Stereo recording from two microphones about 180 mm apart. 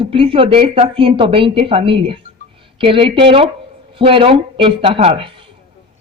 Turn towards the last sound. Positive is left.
turn(degrees=-30)  # may be behind; listen again after turning